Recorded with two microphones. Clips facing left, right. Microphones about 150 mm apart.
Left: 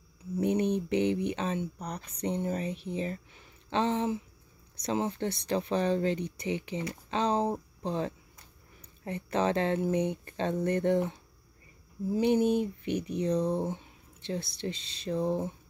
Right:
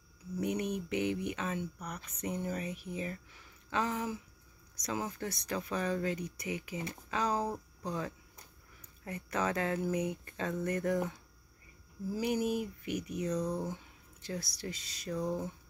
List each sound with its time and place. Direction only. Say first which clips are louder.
0.4 s speech: left 7 dB; 30° left (ahead or behind)